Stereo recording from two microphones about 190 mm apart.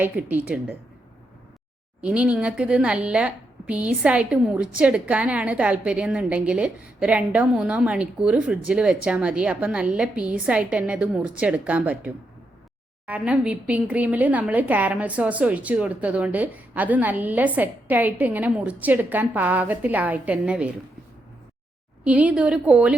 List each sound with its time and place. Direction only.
0.0 s a woman's voice: 10° right (ahead or behind)
2.0 s a woman's voice: 5° right (ahead or behind)
22.0 s a woman's voice: 5° right (ahead or behind)